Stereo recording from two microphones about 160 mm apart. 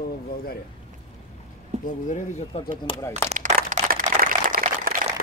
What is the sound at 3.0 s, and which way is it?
Speech, 15° left (ahead or behind).